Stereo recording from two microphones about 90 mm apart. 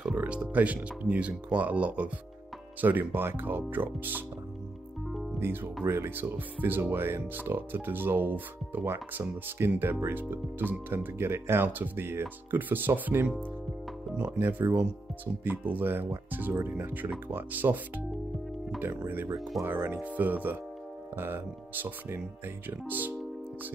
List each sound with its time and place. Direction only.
0.0 s music: 15° right (ahead or behind)
1.0 s speech: 15° right (ahead or behind)
5.4 s speech: 25° right (ahead or behind)